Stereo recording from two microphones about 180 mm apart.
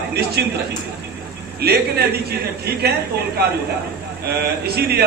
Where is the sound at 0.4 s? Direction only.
65° right (ahead or behind).